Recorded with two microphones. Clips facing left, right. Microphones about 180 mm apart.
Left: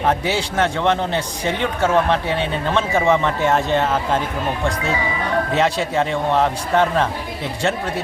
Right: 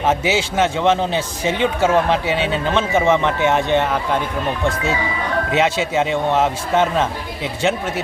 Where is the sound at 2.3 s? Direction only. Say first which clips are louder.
Right 2 dB; 90° right.